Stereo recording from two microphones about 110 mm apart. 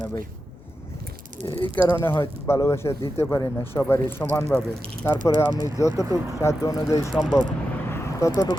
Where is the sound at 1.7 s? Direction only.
20° left (ahead or behind).